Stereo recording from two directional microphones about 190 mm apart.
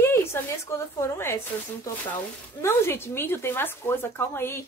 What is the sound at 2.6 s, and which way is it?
Speech, 10° left (ahead or behind).